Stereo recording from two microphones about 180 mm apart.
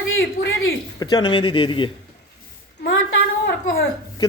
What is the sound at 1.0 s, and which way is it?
Speech, 25° left (ahead or behind).